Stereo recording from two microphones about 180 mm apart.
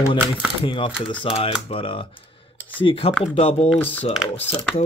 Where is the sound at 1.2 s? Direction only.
30° left (ahead or behind).